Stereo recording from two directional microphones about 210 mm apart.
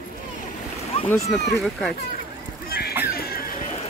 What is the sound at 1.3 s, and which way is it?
Speech, centre (ahead or behind).